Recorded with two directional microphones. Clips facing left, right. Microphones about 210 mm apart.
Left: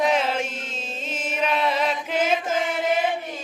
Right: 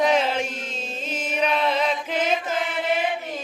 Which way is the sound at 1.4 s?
5° left (ahead or behind).